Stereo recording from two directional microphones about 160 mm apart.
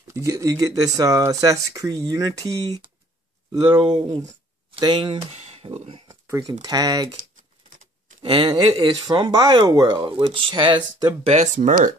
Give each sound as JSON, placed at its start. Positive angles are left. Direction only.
{"t": 0.1, "sound": "speech", "side_deg": -20}
{"t": 5.3, "sound": "speech", "side_deg": -40}
{"t": 6.2, "sound": "speech", "side_deg": -20}
{"t": 8.2, "sound": "speech", "side_deg": -30}
{"t": 11.5, "sound": "speech", "side_deg": -55}